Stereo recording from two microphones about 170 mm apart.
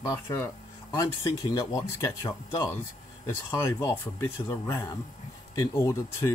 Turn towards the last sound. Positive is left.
turn(degrees=15)  # may be behind; listen again after turning